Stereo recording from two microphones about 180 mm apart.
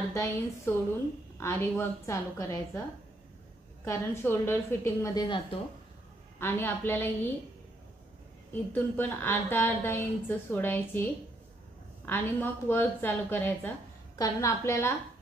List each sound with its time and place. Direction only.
0.1 s a woman's voice: 15° left (ahead or behind)
3.8 s a woman's voice: 15° left (ahead or behind)
6.4 s a woman's voice: 10° left (ahead or behind)
8.7 s a woman's voice: 10° left (ahead or behind)
12.1 s a woman's voice: 10° left (ahead or behind)